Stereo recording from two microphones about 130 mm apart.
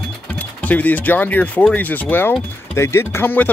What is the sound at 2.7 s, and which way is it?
Speech, 20° left (ahead or behind).